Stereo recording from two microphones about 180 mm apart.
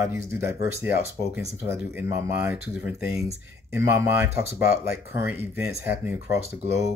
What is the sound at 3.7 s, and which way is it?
Speech, 15° right (ahead or behind).